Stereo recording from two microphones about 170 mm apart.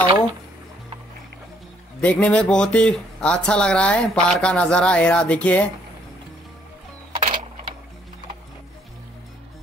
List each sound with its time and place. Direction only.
2.0 s speech: 10° left (ahead or behind)
7.2 s sewing machine: 50° right (ahead or behind)